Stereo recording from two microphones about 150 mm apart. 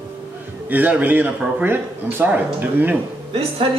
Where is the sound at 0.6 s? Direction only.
10° right (ahead or behind).